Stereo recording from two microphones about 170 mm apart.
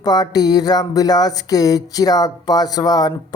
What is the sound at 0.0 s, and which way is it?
Speech, 25° left (ahead or behind).